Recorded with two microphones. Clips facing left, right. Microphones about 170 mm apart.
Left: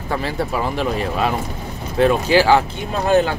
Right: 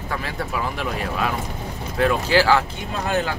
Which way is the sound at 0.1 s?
30° left (ahead or behind).